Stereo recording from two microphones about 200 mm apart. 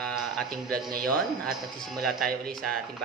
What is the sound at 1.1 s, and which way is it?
Speech, 5° left (ahead or behind).